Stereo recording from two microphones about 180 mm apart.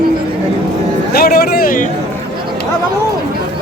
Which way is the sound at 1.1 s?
60° left (ahead or behind).